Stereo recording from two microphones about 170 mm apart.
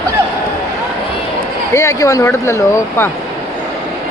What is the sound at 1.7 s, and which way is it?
Speech, 20° left (ahead or behind).